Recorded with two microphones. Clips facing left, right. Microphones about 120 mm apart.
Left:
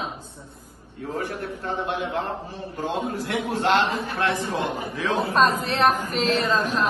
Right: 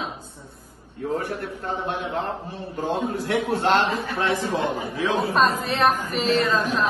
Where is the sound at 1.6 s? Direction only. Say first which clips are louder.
Left 1 dB; 50° right (ahead or behind).